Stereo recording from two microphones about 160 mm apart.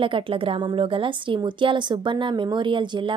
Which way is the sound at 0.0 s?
35° right (ahead or behind).